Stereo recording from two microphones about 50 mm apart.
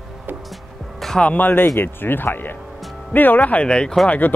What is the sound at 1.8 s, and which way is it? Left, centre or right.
Speech, left.